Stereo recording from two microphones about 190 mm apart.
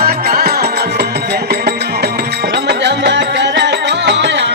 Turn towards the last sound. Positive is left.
turn(degrees=-65)  # may be behind; listen again after turning